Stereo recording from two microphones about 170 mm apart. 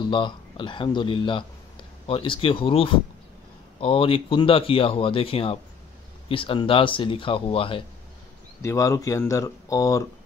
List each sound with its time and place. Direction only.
0.0 s speech: 30° left (ahead or behind)
8.6 s speech: 20° left (ahead or behind)